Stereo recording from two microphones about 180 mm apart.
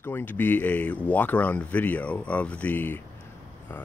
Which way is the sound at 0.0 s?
10° left (ahead or behind).